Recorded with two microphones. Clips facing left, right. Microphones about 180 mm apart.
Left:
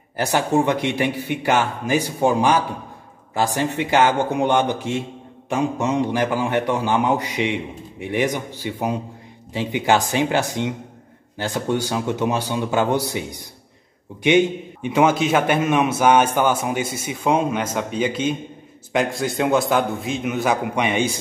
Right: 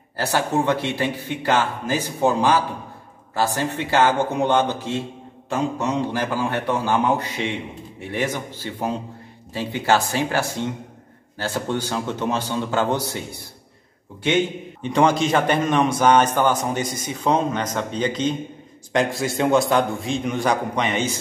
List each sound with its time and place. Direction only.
0.2 s a man's voice: 15° left (ahead or behind)